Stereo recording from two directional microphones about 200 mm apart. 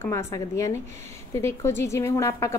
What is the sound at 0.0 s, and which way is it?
A woman's voice, 15° left (ahead or behind).